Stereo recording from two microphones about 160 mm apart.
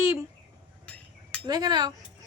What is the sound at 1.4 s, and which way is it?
Speech, 25° right (ahead or behind).